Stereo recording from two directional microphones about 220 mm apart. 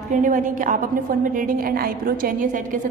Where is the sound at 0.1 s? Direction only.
35° right (ahead or behind).